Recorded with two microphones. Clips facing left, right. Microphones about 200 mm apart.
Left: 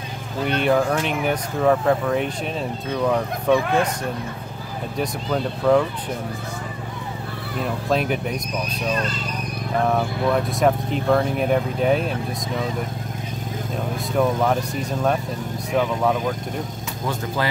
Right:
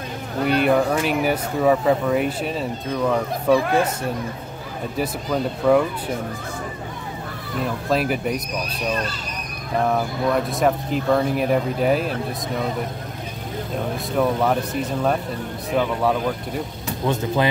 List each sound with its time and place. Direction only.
0.5 s speech: centre (ahead or behind)
4.9 s speech: 5° right (ahead or behind)
7.9 s speech: centre (ahead or behind)
9.8 s speech: centre (ahead or behind)
14.1 s speech: centre (ahead or behind)
17.0 s speech: 20° right (ahead or behind)